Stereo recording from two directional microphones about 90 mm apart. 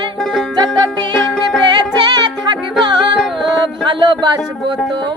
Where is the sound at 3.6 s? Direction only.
60° right (ahead or behind).